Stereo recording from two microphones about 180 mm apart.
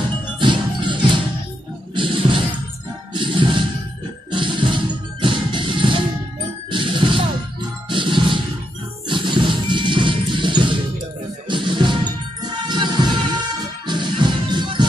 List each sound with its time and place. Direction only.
0.4 s music: 25° right (ahead or behind)
6.7 s ding: 30° right (ahead or behind)
7.9 s music: 25° right (ahead or behind)